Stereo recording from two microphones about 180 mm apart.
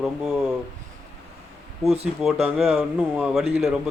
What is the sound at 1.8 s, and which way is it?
Speech, 35° right (ahead or behind).